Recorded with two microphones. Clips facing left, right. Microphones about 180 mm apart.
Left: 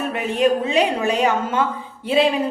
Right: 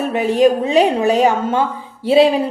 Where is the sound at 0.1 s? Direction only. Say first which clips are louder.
Right 6 dB; 35° right (ahead or behind).